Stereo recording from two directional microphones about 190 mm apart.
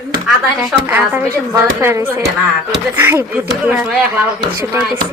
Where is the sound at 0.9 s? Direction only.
10° right (ahead or behind).